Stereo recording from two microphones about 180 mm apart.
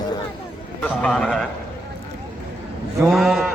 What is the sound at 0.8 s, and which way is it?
Speech, 5° left (ahead or behind).